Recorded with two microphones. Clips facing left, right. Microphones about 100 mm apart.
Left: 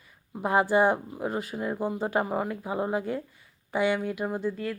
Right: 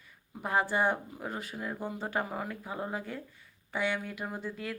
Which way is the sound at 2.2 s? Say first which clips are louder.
Left 7 dB; 20° left (ahead or behind).